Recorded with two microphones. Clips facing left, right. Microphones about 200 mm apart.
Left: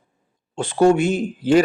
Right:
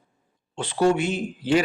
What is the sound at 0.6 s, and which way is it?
A man's voice, 45° left (ahead or behind).